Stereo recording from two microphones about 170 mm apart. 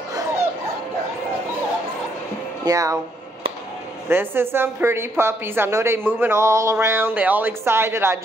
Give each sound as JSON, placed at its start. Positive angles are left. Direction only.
{"t": 2.6, "sound": "speech", "side_deg": -20}
{"t": 4.1, "sound": "a woman's voice", "side_deg": -15}